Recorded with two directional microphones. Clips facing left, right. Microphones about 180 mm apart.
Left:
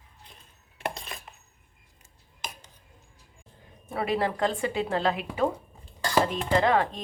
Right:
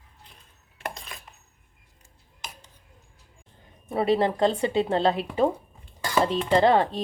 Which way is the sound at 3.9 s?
25° right (ahead or behind).